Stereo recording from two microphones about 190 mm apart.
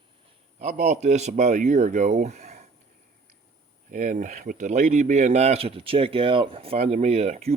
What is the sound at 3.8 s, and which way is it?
Speech, 45° right (ahead or behind).